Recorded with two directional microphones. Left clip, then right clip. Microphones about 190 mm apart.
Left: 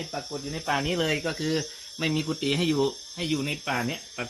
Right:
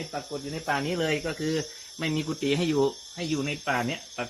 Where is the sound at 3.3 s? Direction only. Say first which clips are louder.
Right 1 dB; 55° left (ahead or behind).